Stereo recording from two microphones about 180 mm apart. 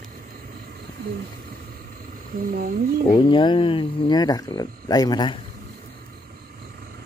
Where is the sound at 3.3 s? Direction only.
25° left (ahead or behind).